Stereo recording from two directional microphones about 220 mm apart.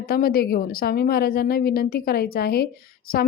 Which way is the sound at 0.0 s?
45° left (ahead or behind).